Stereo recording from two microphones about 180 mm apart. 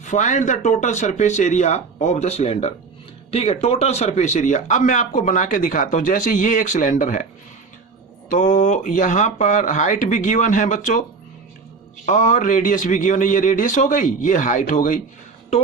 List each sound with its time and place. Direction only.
0.0 s speech: 45° left (ahead or behind)
8.3 s speech: 45° left (ahead or behind)
12.0 s speech: 45° left (ahead or behind)